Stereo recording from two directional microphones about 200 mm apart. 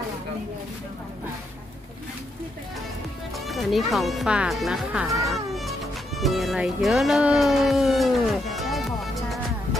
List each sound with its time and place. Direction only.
3.3 s music: centre (ahead or behind)